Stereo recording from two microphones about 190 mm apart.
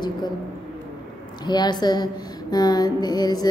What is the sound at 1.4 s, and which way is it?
A woman's voice, 20° left (ahead or behind).